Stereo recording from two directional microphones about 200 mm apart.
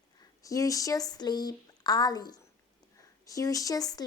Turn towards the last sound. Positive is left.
turn(degrees=20)  # may be behind; listen again after turning